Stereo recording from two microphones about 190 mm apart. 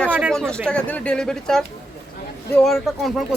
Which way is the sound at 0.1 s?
5° right (ahead or behind).